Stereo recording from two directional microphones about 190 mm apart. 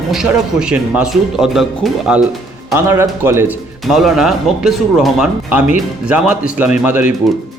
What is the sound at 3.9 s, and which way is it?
Speech, centre (ahead or behind).